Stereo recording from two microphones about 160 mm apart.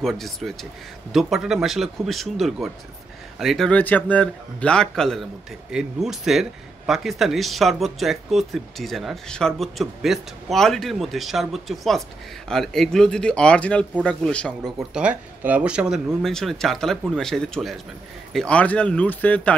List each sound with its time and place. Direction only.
0.0 s speech: centre (ahead or behind)